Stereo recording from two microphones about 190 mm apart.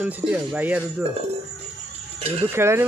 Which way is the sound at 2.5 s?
15° right (ahead or behind).